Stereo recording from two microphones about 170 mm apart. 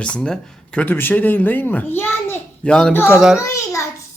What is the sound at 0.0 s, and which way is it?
Speech, 5° left (ahead or behind).